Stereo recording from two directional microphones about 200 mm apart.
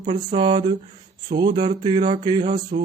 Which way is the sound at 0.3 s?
25° right (ahead or behind).